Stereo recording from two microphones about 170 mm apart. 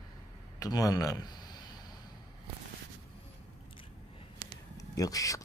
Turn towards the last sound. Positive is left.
turn(degrees=20)  # may be behind; listen again after turning